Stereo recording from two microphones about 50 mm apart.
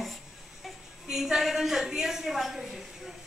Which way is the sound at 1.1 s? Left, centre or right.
Centre.